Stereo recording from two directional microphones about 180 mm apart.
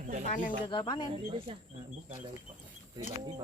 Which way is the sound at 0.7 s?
25° left (ahead or behind).